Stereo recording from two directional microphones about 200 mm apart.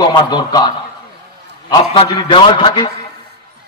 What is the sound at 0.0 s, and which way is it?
Speech, 20° left (ahead or behind).